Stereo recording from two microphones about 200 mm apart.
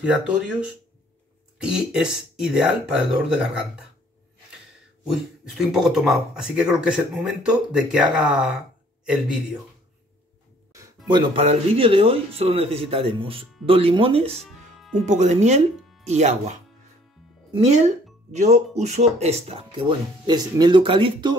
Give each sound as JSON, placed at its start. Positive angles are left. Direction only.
{"t": 0.0, "sound": "speech", "side_deg": -5}
{"t": 5.0, "sound": "speech", "side_deg": 0}
{"t": 11.1, "sound": "speech", "side_deg": -25}
{"t": 14.4, "sound": "music", "side_deg": 0}
{"t": 15.0, "sound": "speech", "side_deg": -35}